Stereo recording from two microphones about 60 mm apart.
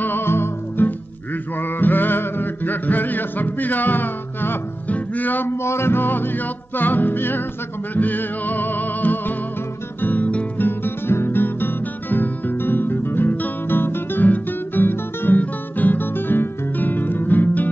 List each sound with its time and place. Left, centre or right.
0.0 s music: left
5.5 s music: left
10.0 s guitar: left
10.8 s guitar: left